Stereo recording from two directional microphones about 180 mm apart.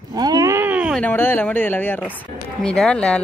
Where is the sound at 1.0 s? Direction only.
10° left (ahead or behind).